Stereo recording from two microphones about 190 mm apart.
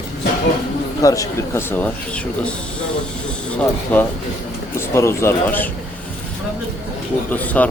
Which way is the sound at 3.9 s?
10° left (ahead or behind).